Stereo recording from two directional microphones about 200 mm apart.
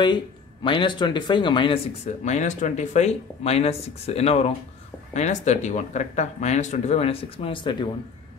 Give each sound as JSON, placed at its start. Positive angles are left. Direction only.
{"t": 0.7, "sound": "speech", "side_deg": 25}
{"t": 2.2, "sound": "speech", "side_deg": 35}